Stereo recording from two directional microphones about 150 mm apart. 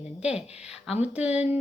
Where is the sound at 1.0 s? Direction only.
10° right (ahead or behind).